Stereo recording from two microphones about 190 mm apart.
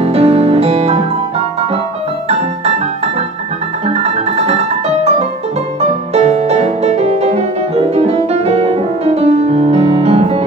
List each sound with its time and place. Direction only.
0.0 s music: 30° right (ahead or behind)
3.8 s music: 30° right (ahead or behind)